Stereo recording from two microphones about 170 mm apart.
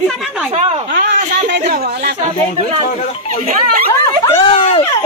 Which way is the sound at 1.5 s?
75° right (ahead or behind).